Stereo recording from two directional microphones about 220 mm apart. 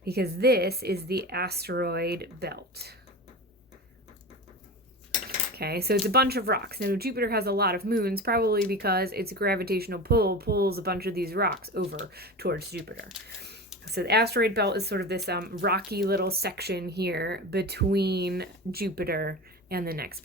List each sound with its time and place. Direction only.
0.0 s speech: 45° right (ahead or behind)
5.5 s speech: 45° right (ahead or behind)